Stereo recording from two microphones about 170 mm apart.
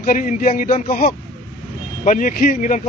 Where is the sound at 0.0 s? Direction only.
50° left (ahead or behind).